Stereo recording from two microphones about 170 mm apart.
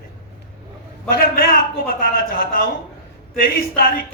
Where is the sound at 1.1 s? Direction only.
60° left (ahead or behind).